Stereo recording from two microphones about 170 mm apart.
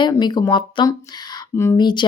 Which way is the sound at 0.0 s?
25° left (ahead or behind).